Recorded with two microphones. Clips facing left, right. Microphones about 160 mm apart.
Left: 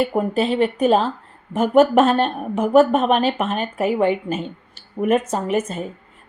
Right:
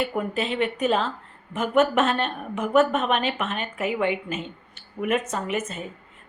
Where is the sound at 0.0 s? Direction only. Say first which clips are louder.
Left 7 dB; 35° left (ahead or behind).